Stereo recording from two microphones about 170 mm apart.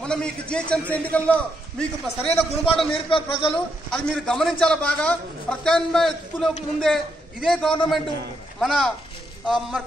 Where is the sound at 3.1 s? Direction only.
30° left (ahead or behind).